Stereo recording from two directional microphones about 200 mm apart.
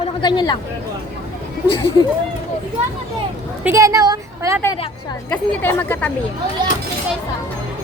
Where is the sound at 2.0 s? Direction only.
20° left (ahead or behind).